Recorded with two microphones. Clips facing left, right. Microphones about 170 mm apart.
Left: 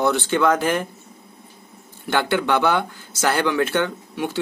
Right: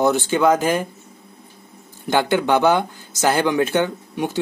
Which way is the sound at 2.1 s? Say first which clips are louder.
Right 3 dB; 15° right (ahead or behind).